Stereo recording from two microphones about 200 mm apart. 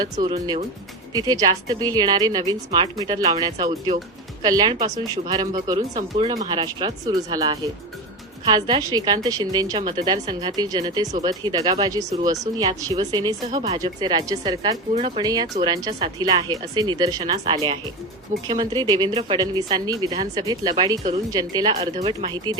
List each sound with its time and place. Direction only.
0.0 s a woman's voice: 20° right (ahead or behind)